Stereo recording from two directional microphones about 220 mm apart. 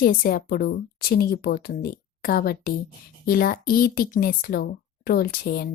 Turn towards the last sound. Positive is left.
turn(degrees=40)  # may be behind; listen again after turning